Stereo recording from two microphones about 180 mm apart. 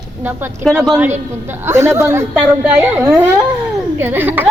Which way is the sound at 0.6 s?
Centre (ahead or behind).